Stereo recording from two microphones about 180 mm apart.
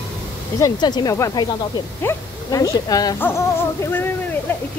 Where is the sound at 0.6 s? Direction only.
25° left (ahead or behind).